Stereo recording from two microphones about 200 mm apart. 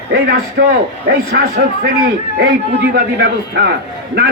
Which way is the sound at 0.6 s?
60° right (ahead or behind).